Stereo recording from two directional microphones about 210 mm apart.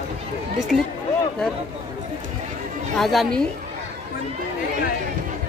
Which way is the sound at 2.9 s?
Centre (ahead or behind).